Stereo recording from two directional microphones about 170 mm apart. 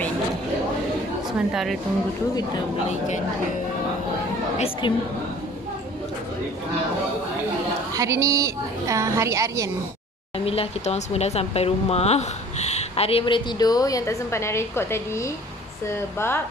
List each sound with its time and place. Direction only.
1.5 s a woman's voice: centre (ahead or behind)
4.6 s speech: 35° left (ahead or behind)
7.9 s a woman's voice: 20° right (ahead or behind)
10.4 s a woman's voice: 35° left (ahead or behind); by 16.3 s 15° left (ahead or behind)